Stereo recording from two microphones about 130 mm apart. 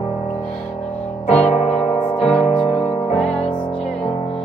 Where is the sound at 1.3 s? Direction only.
60° left (ahead or behind).